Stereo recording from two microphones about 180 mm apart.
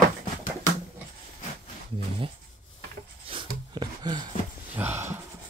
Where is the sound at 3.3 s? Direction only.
25° right (ahead or behind).